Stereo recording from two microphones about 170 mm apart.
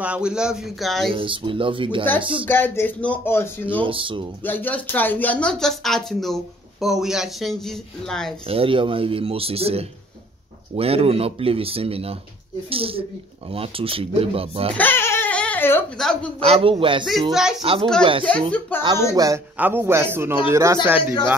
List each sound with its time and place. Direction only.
0.0 s speech: 5° right (ahead or behind)
1.1 s speech: 30° right (ahead or behind)
2.4 s speech: 10° left (ahead or behind)
3.6 s speech: 30° right (ahead or behind)
4.4 s speech: 10° left (ahead or behind)
8.5 s speech: 30° right (ahead or behind)
14.8 s crying: 15° left (ahead or behind)
16.0 s speech: 5° left (ahead or behind)
16.3 s speech: 35° right (ahead or behind)
17.0 s speech: centre (ahead or behind)
18.7 s speech: 10° left (ahead or behind)
19.1 s a man's voice: 20° right (ahead or behind)